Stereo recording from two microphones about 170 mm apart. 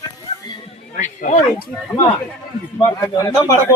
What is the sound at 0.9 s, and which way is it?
Speech, 45° left (ahead or behind).